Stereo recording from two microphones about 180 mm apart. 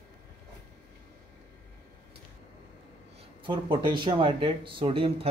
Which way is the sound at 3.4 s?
25° right (ahead or behind).